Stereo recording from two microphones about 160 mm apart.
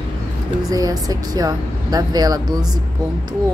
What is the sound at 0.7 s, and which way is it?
Speech, 20° right (ahead or behind).